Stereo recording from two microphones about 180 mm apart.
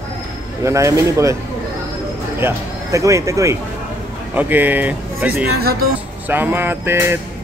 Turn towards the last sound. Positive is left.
turn(degrees=-15)  # may be behind; listen again after turning